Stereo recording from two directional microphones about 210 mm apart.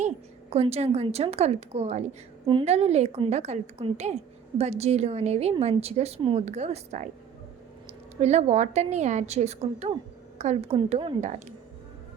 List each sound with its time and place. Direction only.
0.5 s a woman's voice: 30° right (ahead or behind)